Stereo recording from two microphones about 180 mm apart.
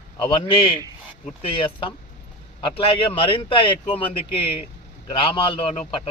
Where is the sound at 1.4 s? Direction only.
30° left (ahead or behind).